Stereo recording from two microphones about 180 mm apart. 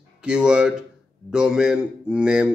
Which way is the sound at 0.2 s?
5° right (ahead or behind).